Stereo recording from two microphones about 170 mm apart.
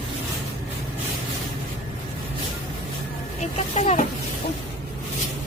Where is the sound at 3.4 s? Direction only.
45° left (ahead or behind).